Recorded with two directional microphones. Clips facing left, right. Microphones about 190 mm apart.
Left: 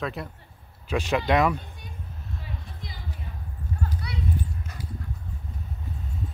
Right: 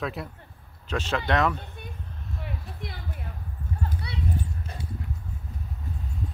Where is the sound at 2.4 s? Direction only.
60° right (ahead or behind).